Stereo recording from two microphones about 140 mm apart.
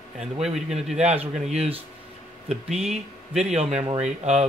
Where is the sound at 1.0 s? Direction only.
50° right (ahead or behind).